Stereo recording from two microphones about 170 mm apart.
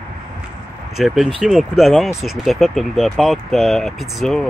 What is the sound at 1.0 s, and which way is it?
Speech, centre (ahead or behind).